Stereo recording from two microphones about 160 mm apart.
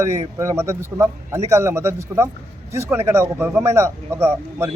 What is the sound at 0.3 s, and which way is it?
A man's voice, 15° right (ahead or behind).